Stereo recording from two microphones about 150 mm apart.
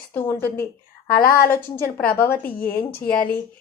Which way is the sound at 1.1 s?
85° left.